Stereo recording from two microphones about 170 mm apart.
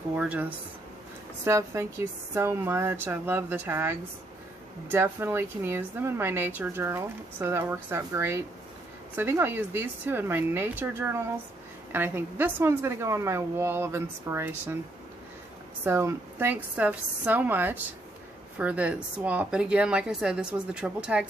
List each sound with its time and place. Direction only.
0.1 s a woman's voice: 5° right (ahead or behind)
15.8 s a woman's voice: 15° right (ahead or behind)